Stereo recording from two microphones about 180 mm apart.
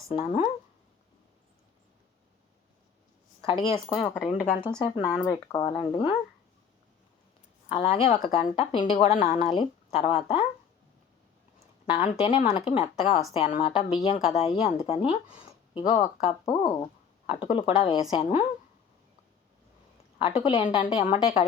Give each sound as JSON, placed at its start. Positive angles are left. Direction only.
{"t": 0.1, "sound": "speech", "side_deg": 30}
{"t": 3.4, "sound": "a woman's voice", "side_deg": 30}
{"t": 3.9, "sound": "speech", "side_deg": -5}
{"t": 4.8, "sound": "speech", "side_deg": 25}
{"t": 7.7, "sound": "a woman's voice", "side_deg": 30}
{"t": 11.9, "sound": "a woman's voice", "side_deg": 30}
{"t": 20.1, "sound": "a woman's voice", "side_deg": 30}